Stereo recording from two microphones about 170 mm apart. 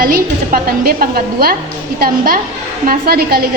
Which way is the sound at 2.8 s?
65° right (ahead or behind).